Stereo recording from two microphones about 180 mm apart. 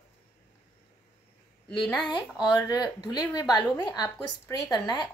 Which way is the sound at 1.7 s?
25° left (ahead or behind).